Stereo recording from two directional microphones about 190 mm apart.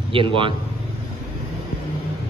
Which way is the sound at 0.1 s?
25° right (ahead or behind).